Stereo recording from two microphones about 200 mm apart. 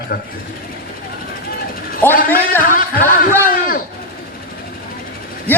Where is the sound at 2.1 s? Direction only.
45° left (ahead or behind).